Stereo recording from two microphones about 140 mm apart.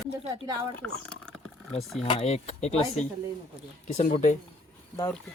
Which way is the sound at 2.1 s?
45° left (ahead or behind).